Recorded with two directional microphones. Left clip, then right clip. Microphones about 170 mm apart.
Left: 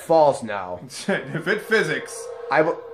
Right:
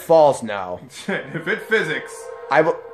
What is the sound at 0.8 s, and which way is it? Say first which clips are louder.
Speech: left 1 dB; 35° left (ahead or behind).